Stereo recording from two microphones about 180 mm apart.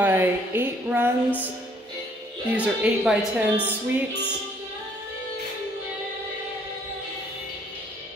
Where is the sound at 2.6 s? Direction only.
5° right (ahead or behind).